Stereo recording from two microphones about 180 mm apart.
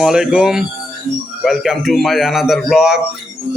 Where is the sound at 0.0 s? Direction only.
5° right (ahead or behind).